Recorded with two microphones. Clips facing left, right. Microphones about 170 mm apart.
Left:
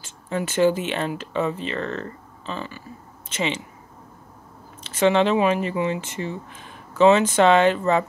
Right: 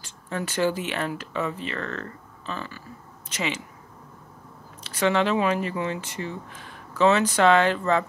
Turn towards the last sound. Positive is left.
turn(degrees=20)  # may be behind; listen again after turning